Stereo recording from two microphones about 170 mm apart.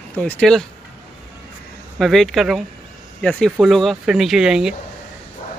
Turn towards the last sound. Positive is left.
turn(degrees=-5)  # may be behind; listen again after turning